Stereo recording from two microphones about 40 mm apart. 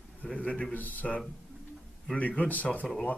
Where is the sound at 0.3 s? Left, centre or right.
Left.